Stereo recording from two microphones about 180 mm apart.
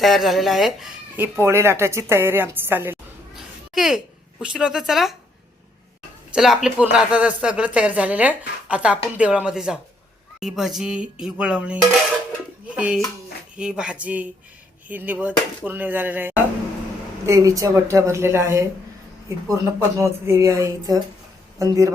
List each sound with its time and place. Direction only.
0.0 s a woman's voice: centre (ahead or behind)
6.3 s speech: centre (ahead or behind)
20.0 s speech: 15° right (ahead or behind)